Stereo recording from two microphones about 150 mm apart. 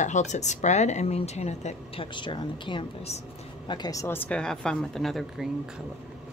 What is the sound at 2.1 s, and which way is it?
A woman's voice, 30° left (ahead or behind).